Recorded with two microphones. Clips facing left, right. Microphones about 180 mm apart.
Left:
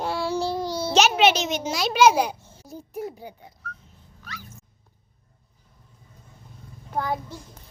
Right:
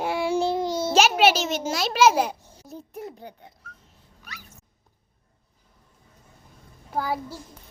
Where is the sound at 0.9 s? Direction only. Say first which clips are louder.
Even; 10° right (ahead or behind).